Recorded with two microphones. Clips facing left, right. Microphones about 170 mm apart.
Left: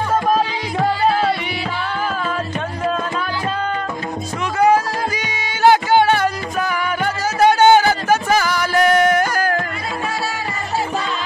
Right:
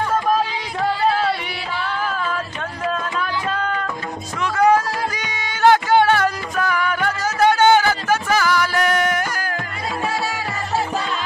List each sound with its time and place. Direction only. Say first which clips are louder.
4.6 s music: left 1 dB; 5° left (ahead or behind)
7.3 s music: left 3 dB; 15° left (ahead or behind); by 9.6 s 40° left (ahead or behind)